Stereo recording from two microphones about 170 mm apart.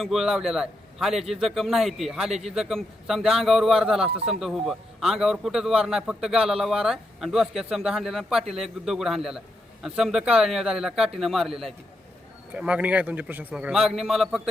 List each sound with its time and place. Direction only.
0.0 s a man's voice: centre (ahead or behind)